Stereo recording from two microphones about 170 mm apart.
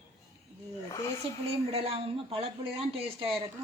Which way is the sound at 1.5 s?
35° right (ahead or behind).